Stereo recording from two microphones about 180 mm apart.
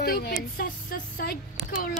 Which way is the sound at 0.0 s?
60° left (ahead or behind).